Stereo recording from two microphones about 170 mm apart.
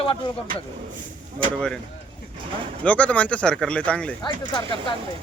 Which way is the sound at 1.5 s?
5° left (ahead or behind).